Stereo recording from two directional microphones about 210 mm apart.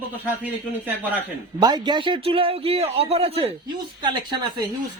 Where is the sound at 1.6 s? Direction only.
20° right (ahead or behind).